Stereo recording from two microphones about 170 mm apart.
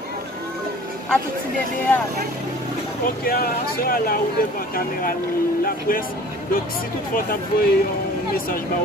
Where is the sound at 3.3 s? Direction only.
60° left (ahead or behind).